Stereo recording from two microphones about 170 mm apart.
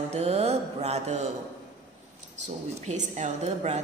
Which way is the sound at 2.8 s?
45° right (ahead or behind).